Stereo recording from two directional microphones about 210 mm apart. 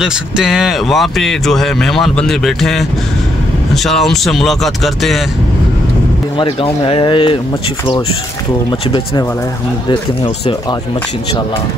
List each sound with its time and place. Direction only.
0.0 s a man's voice: 5° right (ahead or behind)
6.3 s speech: 25° left (ahead or behind)
8.6 s speech: 20° left (ahead or behind)